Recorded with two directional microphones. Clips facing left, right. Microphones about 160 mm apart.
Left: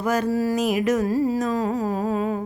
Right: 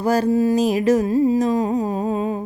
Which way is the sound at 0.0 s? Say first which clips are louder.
Right 4 dB; 30° right (ahead or behind).